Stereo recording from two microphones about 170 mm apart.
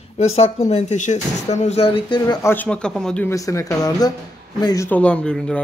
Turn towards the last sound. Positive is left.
turn(degrees=5)  # may be behind; listen again after turning